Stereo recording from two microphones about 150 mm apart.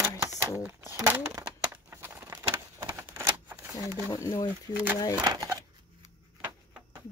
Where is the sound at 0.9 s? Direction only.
20° right (ahead or behind).